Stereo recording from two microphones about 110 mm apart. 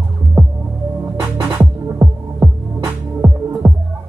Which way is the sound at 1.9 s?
25° right (ahead or behind).